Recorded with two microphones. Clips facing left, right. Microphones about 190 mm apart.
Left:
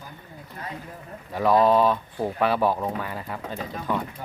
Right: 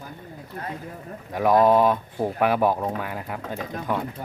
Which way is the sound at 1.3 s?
15° right (ahead or behind).